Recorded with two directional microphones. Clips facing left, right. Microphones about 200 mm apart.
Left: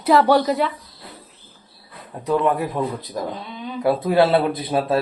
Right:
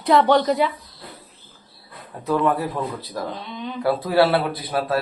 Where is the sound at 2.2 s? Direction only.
15° left (ahead or behind).